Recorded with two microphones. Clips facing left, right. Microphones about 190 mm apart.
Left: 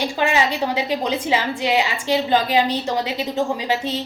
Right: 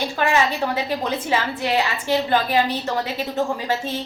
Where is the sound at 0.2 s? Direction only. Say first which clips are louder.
Even; 15° left (ahead or behind).